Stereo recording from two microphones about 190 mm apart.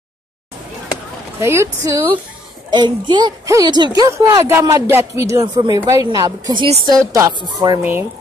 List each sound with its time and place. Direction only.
1.4 s a woman's voice: 15° right (ahead or behind)